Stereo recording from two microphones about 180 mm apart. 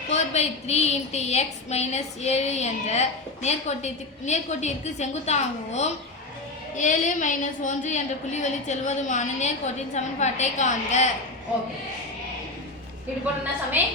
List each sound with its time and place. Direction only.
0.1 s a woman's voice: 40° left (ahead or behind)
13.8 s a woman's voice: 10° right (ahead or behind)